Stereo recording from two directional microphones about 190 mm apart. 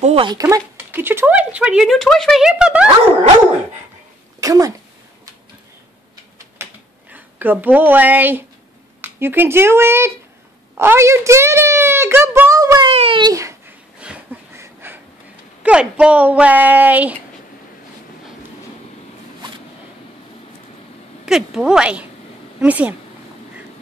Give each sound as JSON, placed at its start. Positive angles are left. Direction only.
{"t": 0.0, "sound": "speech", "side_deg": -30}
{"t": 4.4, "sound": "speech", "side_deg": -20}
{"t": 6.6, "sound": "a sound", "side_deg": -10}
{"t": 9.0, "sound": "speech", "side_deg": -10}
{"t": 12.9, "sound": "babbling", "side_deg": -30}
{"t": 15.6, "sound": "speech", "side_deg": -5}
{"t": 21.3, "sound": "a woman's voice", "side_deg": 0}